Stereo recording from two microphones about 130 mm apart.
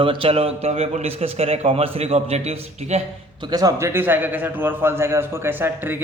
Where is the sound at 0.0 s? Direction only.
45° right (ahead or behind).